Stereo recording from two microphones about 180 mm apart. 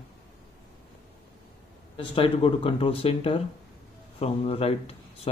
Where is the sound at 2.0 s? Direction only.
30° left (ahead or behind).